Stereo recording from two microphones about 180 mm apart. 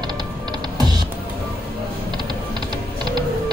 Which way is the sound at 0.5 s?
25° right (ahead or behind).